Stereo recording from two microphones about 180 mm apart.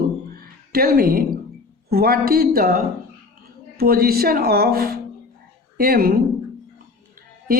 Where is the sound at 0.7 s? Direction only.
55° right (ahead or behind).